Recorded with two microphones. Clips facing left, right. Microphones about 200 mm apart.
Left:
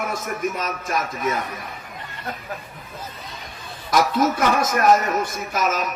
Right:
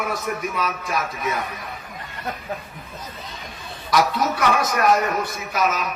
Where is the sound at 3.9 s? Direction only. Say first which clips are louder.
Left 1 dB; 50° left (ahead or behind).